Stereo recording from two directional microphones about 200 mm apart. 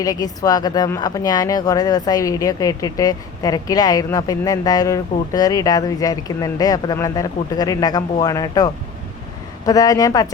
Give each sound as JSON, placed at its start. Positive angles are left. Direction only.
{"t": 0.0, "sound": "speech", "side_deg": 20}